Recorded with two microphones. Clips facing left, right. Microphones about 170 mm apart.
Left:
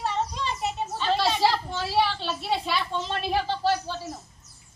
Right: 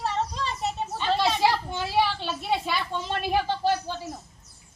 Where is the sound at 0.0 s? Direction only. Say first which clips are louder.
Even; centre (ahead or behind).